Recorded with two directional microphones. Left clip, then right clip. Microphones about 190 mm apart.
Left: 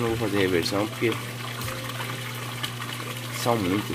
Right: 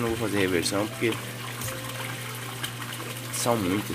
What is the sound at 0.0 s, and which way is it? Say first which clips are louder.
Speech: left 2 dB; centre (ahead or behind).